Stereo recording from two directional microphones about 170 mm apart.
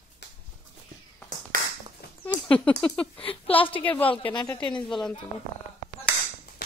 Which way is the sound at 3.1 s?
30° left (ahead or behind).